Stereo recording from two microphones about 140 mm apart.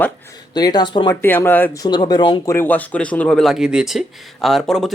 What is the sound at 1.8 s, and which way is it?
Speech, 30° left (ahead or behind).